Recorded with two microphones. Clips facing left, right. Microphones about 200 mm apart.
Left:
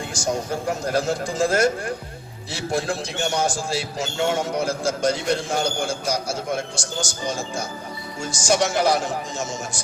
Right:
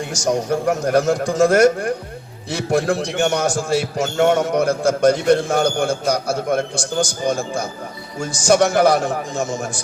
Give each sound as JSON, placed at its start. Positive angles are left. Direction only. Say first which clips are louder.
{"t": 0.3, "sound": "a man's voice", "louder": "right 6 dB", "side_deg": -65}